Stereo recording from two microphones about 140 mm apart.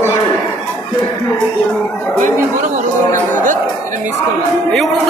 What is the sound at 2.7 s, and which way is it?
Speech, 65° right (ahead or behind).